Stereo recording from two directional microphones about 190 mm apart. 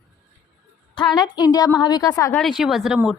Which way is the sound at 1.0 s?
20° left (ahead or behind).